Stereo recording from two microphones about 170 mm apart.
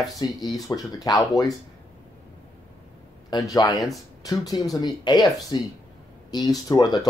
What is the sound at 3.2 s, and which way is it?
Speech, 20° left (ahead or behind).